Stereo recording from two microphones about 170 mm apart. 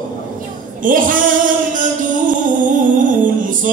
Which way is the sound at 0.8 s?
50° right (ahead or behind).